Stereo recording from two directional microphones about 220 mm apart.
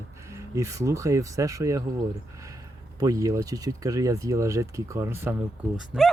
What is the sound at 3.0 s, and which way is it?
Speech, 15° right (ahead or behind).